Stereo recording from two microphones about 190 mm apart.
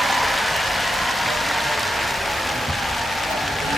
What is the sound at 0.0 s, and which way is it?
Vehicle, centre (ahead or behind).